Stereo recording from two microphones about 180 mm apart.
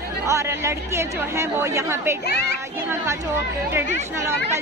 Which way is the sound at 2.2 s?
65° left (ahead or behind).